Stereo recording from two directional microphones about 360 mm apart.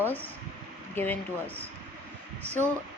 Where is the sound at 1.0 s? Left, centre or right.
Centre.